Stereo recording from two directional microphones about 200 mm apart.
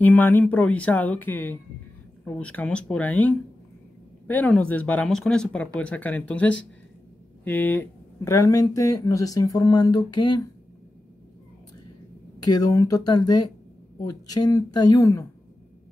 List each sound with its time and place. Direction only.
0.0 s speech: 10° left (ahead or behind)
12.4 s speech: 20° left (ahead or behind)